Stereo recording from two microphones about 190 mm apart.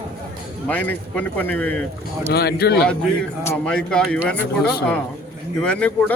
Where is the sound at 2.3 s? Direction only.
55° left (ahead or behind).